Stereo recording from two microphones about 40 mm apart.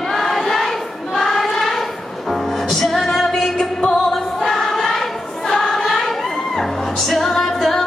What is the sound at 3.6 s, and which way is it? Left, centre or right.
Music, centre.